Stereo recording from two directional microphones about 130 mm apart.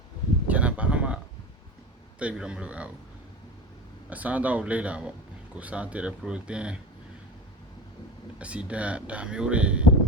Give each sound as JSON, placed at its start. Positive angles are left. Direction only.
{"t": 0.4, "sound": "a sound", "side_deg": -10}
{"t": 2.1, "sound": "speech", "side_deg": -10}
{"t": 4.1, "sound": "speech", "side_deg": -10}
{"t": 8.4, "sound": "speech", "side_deg": -10}